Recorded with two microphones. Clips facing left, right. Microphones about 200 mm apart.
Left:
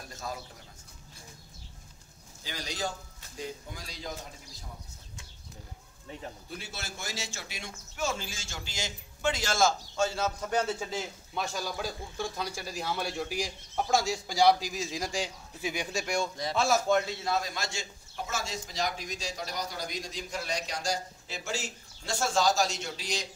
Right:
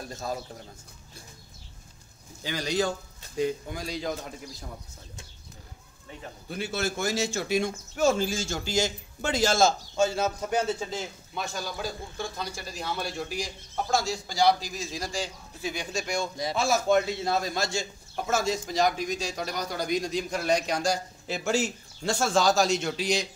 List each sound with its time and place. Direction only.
0.1 s a man's voice: 30° right (ahead or behind)
2.4 s speech: 70° right (ahead or behind)
6.5 s a man's voice: 60° right (ahead or behind); by 9.8 s 25° right (ahead or behind)
9.9 s a man's voice: 15° right (ahead or behind)
10.6 s a man's voice: centre (ahead or behind)
16.3 s a man's voice: 10° right (ahead or behind)
17.2 s a man's voice: 30° right (ahead or behind)
18.1 s a man's voice: 50° right (ahead or behind); by 23.2 s 65° right (ahead or behind)